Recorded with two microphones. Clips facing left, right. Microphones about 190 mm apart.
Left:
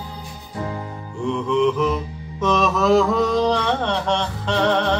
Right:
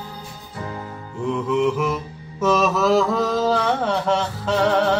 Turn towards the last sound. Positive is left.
turn(degrees=-5)  # may be behind; listen again after turning